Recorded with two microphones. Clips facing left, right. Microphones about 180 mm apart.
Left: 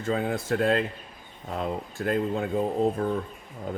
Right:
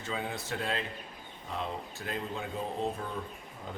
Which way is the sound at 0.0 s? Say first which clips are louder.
Left 9 dB; 50° left (ahead or behind).